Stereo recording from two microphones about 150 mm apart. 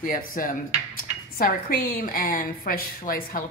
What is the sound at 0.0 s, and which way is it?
A woman's voice, 65° left (ahead or behind).